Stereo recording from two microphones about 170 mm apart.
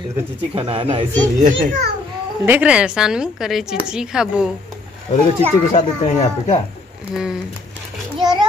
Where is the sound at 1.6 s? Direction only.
50° right (ahead or behind).